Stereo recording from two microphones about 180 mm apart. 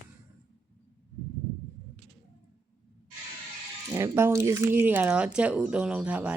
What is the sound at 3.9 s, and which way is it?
Speech, 15° right (ahead or behind).